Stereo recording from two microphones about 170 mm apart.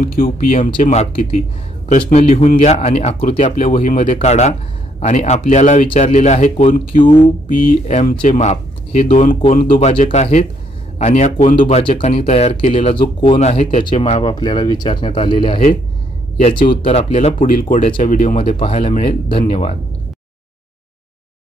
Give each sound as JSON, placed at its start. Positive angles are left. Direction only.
{"t": 0.0, "sound": "speech", "side_deg": 55}
{"t": 13.4, "sound": "speech", "side_deg": 40}
{"t": 17.1, "sound": "speech", "side_deg": 50}
{"t": 19.4, "sound": "speech", "side_deg": 45}